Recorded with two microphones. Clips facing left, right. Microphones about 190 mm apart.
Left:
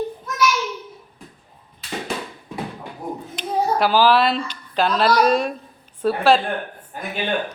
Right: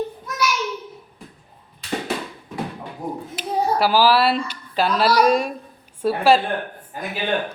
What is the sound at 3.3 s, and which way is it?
A woman's voice, 5° right (ahead or behind).